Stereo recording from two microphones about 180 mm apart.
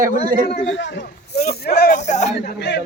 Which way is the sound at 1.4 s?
60° left (ahead or behind).